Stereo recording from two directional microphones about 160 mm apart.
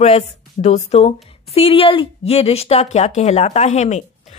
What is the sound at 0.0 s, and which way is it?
Speech, 45° left (ahead or behind).